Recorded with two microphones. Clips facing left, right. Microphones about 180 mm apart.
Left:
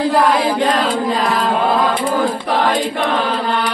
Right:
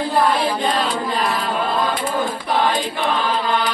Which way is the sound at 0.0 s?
80° left.